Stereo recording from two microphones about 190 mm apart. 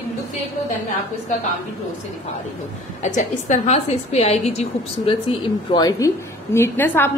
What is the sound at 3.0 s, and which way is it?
A woman's voice, 40° left (ahead or behind).